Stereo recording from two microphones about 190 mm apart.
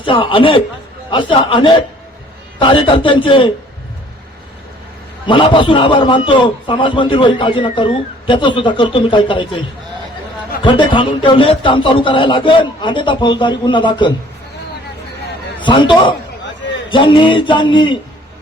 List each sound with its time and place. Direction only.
0.0 s a man's voice: 25° left (ahead or behind)
5.2 s a man's voice: 25° left (ahead or behind)
15.6 s a man's voice: 25° left (ahead or behind)